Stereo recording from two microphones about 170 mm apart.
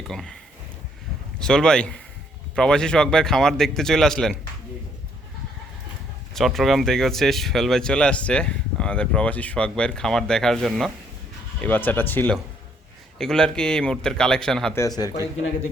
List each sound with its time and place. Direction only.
0.1 s speech: centre (ahead or behind)
1.4 s speech: 5° left (ahead or behind)
6.3 s speech: centre (ahead or behind)
14.8 s speech: 20° left (ahead or behind)